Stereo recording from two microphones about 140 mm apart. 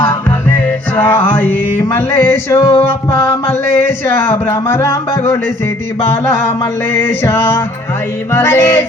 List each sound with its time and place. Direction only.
0.3 s music: 15° left (ahead or behind)
1.8 s a sound: 15° left (ahead or behind)
2.8 s music: 15° left (ahead or behind)
6.9 s music: 15° left (ahead or behind)